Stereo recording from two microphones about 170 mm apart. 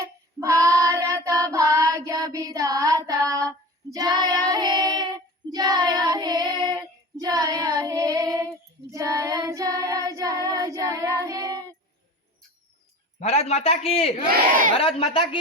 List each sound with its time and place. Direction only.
0.3 s child singing: 20° right (ahead or behind)
13.1 s a man's voice: 40° left (ahead or behind)
14.3 s speech: 50° right (ahead or behind)
14.8 s a man's voice: 35° left (ahead or behind)